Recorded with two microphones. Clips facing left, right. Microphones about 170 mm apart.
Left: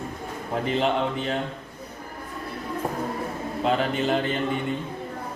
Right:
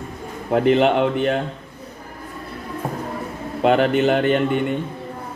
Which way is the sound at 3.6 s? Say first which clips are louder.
Right 8 dB; 70° right (ahead or behind).